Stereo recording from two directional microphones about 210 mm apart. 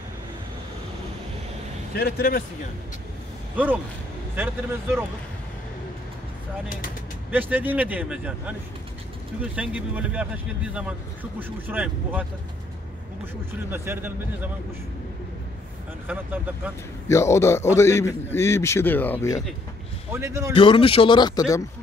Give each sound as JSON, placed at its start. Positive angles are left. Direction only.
{"t": 2.0, "sound": "speech", "side_deg": 50}
{"t": 3.5, "sound": "speech", "side_deg": -5}
{"t": 7.2, "sound": "speech", "side_deg": -10}
{"t": 13.7, "sound": "speech", "side_deg": -10}
{"t": 16.1, "sound": "speech", "side_deg": -10}
{"t": 17.1, "sound": "a man's voice", "side_deg": 15}
{"t": 20.1, "sound": "speech", "side_deg": -15}
{"t": 20.5, "sound": "speech", "side_deg": 25}